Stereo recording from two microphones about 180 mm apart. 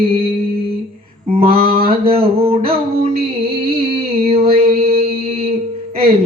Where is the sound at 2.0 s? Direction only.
30° right (ahead or behind).